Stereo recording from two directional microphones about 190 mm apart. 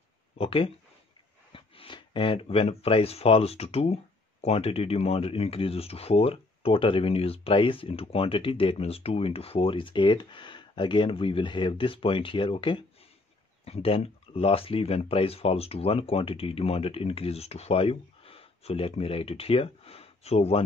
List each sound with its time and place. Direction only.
0.4 s speech: 30° left (ahead or behind)